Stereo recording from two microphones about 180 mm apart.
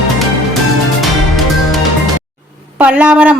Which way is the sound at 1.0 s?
Centre (ahead or behind).